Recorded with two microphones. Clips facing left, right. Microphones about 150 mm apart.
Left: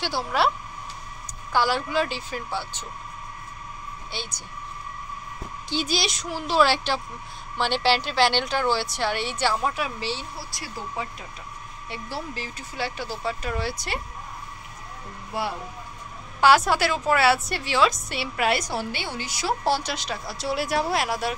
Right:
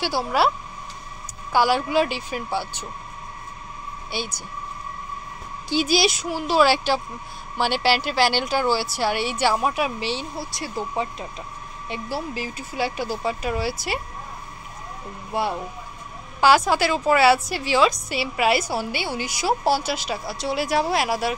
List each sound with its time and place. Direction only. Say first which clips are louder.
0.0 s a woman's voice: right 3 dB; 5° right (ahead or behind)
1.5 s speech: right 4 dB; 10° right (ahead or behind)
4.1 s speech: right 7 dB; 10° right (ahead or behind)
5.7 s a woman's voice: right 6 dB; 10° right (ahead or behind); by 11.2 s 25° right (ahead or behind)
11.9 s speech: right 5 dB; 10° right (ahead or behind)
15.3 s speech: right 4 dB; 20° right (ahead or behind)
16.3 s a woman's voice: right 1 dB; centre (ahead or behind)